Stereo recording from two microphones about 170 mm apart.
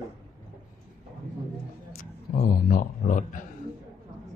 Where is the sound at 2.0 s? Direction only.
55° left (ahead or behind).